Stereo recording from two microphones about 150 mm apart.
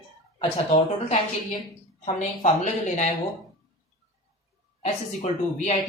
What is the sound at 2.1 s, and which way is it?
Speech, 50° left (ahead or behind).